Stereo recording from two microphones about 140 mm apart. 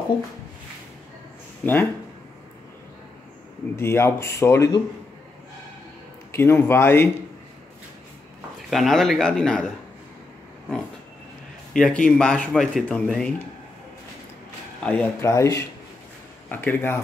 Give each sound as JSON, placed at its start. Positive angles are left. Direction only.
{"t": 1.6, "sound": "speech", "side_deg": 15}
{"t": 3.7, "sound": "speech", "side_deg": 15}
{"t": 6.3, "sound": "speech", "side_deg": 15}
{"t": 8.6, "sound": "speech", "side_deg": 0}
{"t": 11.7, "sound": "speech", "side_deg": 5}
{"t": 14.8, "sound": "speech", "side_deg": 10}
{"t": 15.1, "sound": "speech", "side_deg": 20}